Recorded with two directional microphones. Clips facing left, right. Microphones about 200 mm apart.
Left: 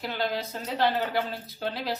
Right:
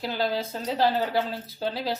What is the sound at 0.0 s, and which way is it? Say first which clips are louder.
Speech: right 3 dB; 30° right (ahead or behind).